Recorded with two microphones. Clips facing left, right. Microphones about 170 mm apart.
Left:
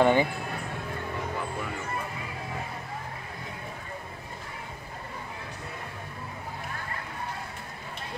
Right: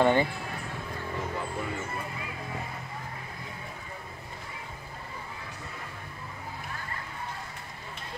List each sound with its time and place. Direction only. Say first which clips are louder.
0.0 s speech: left 1 dB; 15° left (ahead or behind)